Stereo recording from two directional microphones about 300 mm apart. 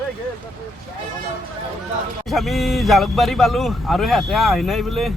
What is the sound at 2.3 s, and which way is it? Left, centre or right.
Speech, centre.